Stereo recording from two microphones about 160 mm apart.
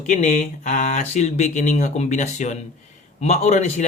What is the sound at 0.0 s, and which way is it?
Speech, 45° left (ahead or behind).